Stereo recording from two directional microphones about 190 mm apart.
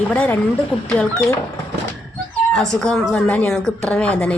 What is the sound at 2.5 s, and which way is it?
Speech, 5° left (ahead or behind).